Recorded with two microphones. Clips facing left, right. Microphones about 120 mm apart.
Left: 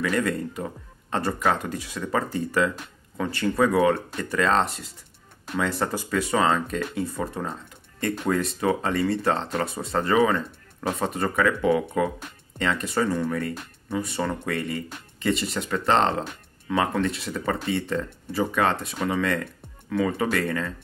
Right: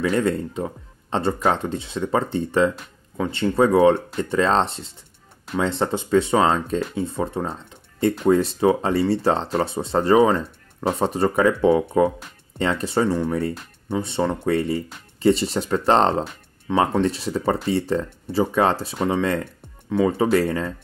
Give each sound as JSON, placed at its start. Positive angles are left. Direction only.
{"t": 0.0, "sound": "speech", "side_deg": -25}
{"t": 16.6, "sound": "speech", "side_deg": -25}